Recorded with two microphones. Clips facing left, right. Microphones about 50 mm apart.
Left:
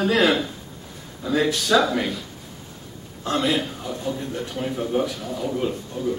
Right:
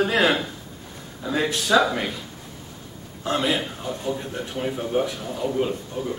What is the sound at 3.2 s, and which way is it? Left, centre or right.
Speech, centre.